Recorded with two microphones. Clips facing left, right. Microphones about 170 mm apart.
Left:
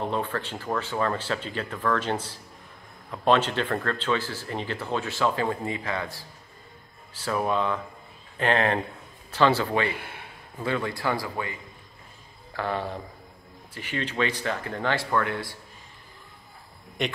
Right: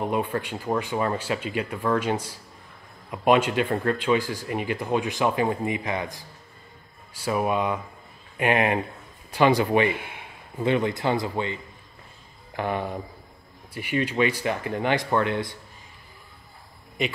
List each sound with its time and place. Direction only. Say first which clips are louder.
0.0 s speech: right 3 dB; 10° right (ahead or behind)
12.5 s speech: right 2 dB; 15° right (ahead or behind)